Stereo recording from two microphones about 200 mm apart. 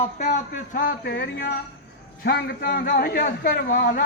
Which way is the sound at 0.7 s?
50° left (ahead or behind).